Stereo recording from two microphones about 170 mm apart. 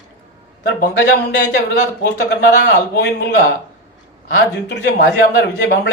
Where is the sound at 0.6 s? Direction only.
85° left.